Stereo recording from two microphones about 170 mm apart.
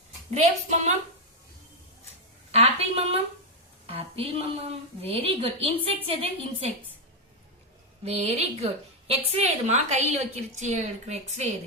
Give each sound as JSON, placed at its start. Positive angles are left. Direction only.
{"t": 0.3, "sound": "a woman's voice", "side_deg": -40}
{"t": 2.5, "sound": "a sound", "side_deg": -35}
{"t": 3.8, "sound": "a woman's voice", "side_deg": -35}
{"t": 8.0, "sound": "a woman's voice", "side_deg": -40}